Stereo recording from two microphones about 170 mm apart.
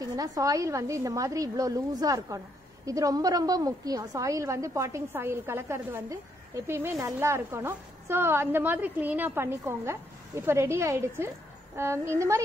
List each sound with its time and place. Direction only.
0.0 s a woman's voice: 20° right (ahead or behind)